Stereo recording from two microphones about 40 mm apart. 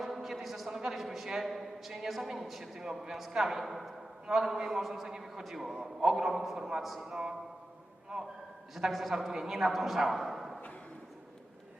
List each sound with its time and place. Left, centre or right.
0.0 s a sound: centre
0.9 s a woman's voice: centre
7.1 s a man's voice: centre